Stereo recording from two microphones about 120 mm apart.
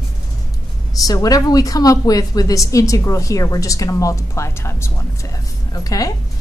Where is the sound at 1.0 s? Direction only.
30° left (ahead or behind).